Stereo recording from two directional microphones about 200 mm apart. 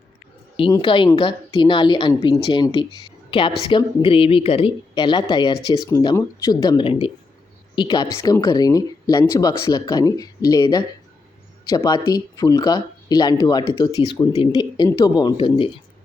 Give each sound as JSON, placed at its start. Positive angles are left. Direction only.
{"t": 0.5, "sound": "speech", "side_deg": 25}